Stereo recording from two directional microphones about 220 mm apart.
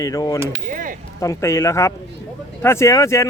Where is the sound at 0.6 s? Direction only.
35° right (ahead or behind).